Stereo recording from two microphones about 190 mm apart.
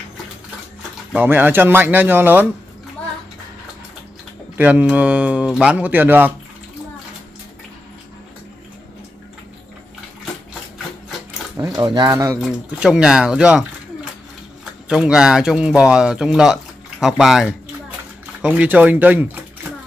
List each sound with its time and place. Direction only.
1.1 s speech: 10° right (ahead or behind)
4.6 s speech: 10° right (ahead or behind)
11.5 s speech: 20° right (ahead or behind)
12.4 s speech: 5° right (ahead or behind)